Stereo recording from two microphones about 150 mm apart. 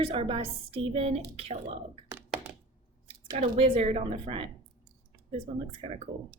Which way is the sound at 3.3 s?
40° right (ahead or behind).